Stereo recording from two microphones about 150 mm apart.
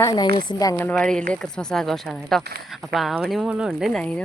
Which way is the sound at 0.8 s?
10° left (ahead or behind).